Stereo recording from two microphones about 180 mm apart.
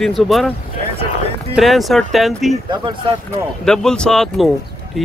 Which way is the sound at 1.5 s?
Centre (ahead or behind).